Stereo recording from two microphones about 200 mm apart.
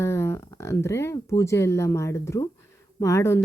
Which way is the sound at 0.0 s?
15° left (ahead or behind).